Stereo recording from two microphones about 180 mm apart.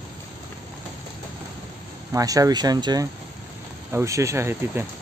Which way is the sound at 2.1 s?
20° right (ahead or behind).